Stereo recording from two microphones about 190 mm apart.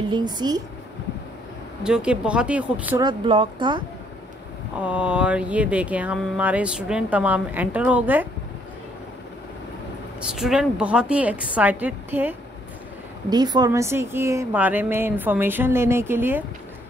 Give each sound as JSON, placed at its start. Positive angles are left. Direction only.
{"t": 0.1, "sound": "speech", "side_deg": -20}
{"t": 1.8, "sound": "speech", "side_deg": -5}
{"t": 3.0, "sound": "speech", "side_deg": -25}
{"t": 4.7, "sound": "speech", "side_deg": -5}
{"t": 10.3, "sound": "speech", "side_deg": 0}
{"t": 13.3, "sound": "speech", "side_deg": -20}